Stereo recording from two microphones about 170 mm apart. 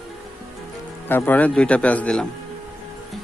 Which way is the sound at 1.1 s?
10° left (ahead or behind).